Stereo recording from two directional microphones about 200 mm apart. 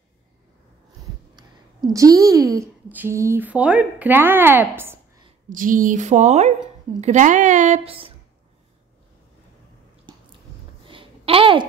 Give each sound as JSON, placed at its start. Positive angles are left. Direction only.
{"t": 1.3, "sound": "a woman's voice", "side_deg": -20}
{"t": 5.5, "sound": "speech", "side_deg": -40}
{"t": 10.9, "sound": "a sound", "side_deg": -25}